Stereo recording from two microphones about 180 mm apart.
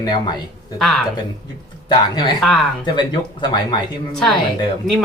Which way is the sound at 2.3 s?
Centre (ahead or behind).